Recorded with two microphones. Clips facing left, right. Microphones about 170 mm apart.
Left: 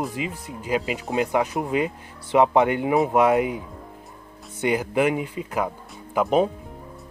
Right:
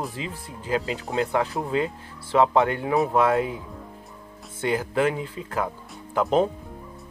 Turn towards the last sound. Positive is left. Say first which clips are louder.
# left 1 dB
turn(degrees=10)  # may be behind; listen again after turning